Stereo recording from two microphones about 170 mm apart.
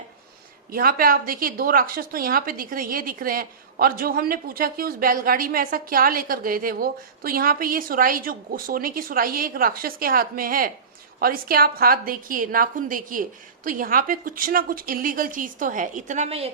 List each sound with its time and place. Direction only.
0.7 s a woman's voice: 60° right (ahead or behind); by 16.5 s 40° right (ahead or behind)